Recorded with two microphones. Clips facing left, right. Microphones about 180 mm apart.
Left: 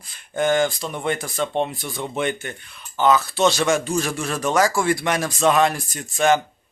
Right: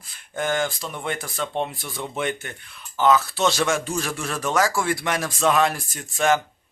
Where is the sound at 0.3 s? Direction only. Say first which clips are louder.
Left 5 dB; centre (ahead or behind).